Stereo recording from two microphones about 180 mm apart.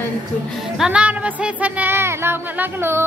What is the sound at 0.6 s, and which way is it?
Music, 5° right (ahead or behind).